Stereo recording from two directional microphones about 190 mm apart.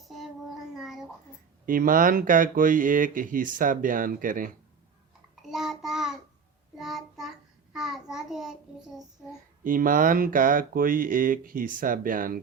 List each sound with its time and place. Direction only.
0.0 s child singing: centre (ahead or behind)
1.6 s speech: 45° right (ahead or behind)
5.4 s child singing: centre (ahead or behind)
9.6 s speech: 45° right (ahead or behind)